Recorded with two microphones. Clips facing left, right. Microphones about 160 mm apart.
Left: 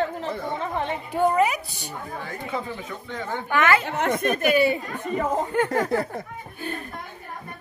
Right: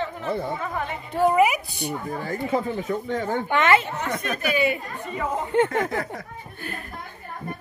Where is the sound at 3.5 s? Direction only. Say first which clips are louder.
Right 1 dB; 25° right (ahead or behind).